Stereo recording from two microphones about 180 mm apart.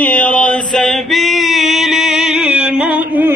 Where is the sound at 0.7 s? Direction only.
Centre (ahead or behind).